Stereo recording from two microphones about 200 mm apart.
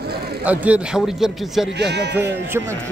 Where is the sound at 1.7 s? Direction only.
55° right (ahead or behind).